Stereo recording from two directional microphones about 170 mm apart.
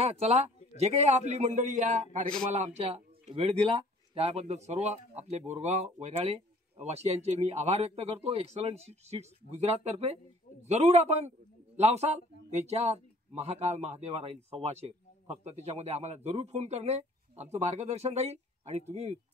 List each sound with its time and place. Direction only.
0.0 s a man's voice: 40° right (ahead or behind)